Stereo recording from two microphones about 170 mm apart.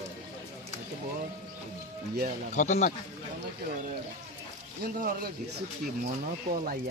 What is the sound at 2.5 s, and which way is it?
Speech, 45° left (ahead or behind).